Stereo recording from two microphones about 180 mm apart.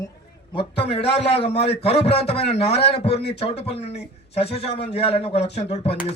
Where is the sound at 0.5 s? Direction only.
30° left (ahead or behind).